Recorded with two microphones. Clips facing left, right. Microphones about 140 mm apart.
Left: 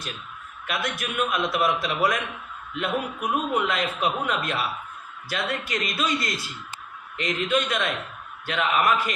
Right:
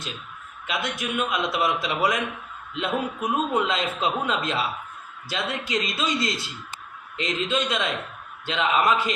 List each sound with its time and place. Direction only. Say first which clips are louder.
0.7 s a man's voice: right 1 dB; 20° right (ahead or behind)